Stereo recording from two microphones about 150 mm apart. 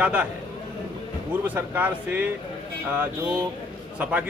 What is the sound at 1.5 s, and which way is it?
Speech, 10° right (ahead or behind).